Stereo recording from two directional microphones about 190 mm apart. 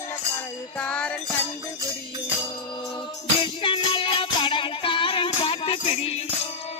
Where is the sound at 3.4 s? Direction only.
25° left (ahead or behind).